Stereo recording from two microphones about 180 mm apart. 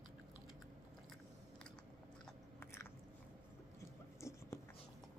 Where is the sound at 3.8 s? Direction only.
15° left (ahead or behind).